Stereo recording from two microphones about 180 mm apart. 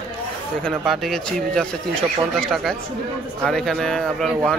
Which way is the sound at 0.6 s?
Centre (ahead or behind).